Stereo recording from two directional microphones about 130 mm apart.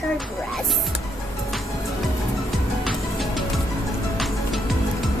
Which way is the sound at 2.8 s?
Centre (ahead or behind).